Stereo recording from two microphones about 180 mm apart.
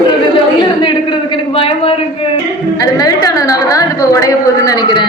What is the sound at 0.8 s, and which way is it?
A man's voice, 25° left (ahead or behind).